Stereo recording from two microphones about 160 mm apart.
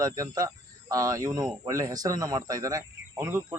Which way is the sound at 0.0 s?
20° right (ahead or behind).